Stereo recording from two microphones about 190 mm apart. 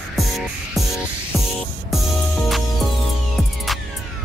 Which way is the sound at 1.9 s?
Centre (ahead or behind).